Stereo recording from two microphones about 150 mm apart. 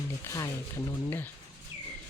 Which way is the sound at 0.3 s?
20° left (ahead or behind).